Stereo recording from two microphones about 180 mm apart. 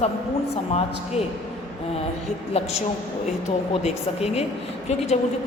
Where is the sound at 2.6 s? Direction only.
35° left (ahead or behind).